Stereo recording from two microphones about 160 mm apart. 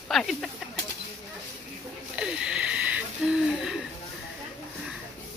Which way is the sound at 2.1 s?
5° right (ahead or behind).